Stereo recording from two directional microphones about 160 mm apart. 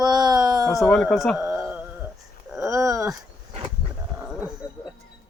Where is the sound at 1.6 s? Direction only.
10° right (ahead or behind).